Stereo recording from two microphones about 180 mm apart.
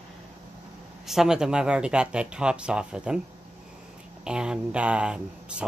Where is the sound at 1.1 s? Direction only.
5° right (ahead or behind).